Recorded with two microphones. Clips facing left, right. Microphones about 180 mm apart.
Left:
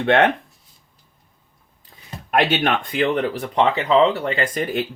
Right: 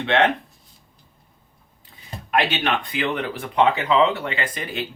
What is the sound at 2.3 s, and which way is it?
Speech, 50° left (ahead or behind).